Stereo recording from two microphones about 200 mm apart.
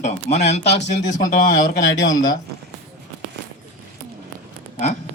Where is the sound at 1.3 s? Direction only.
45° left (ahead or behind).